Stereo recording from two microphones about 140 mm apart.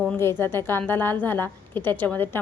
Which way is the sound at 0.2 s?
15° left (ahead or behind).